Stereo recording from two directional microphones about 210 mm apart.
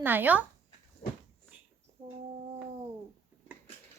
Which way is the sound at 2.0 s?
25° right (ahead or behind).